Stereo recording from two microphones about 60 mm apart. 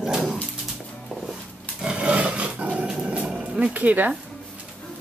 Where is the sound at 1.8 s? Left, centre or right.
Centre.